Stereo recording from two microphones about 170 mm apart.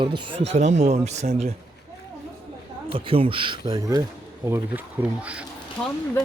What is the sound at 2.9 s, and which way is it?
Speech, 30° right (ahead or behind).